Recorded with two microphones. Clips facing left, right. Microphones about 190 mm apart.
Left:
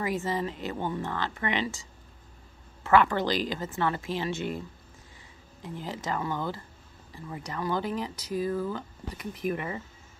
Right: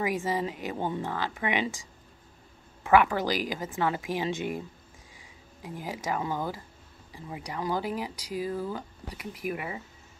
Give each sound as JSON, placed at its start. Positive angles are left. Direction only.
{"t": 0.0, "sound": "speech", "side_deg": -10}